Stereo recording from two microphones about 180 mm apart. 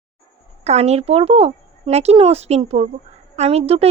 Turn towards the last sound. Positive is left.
turn(degrees=-35)  # may be behind; listen again after turning